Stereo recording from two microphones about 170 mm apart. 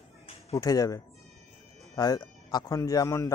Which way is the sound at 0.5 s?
20° left (ahead or behind).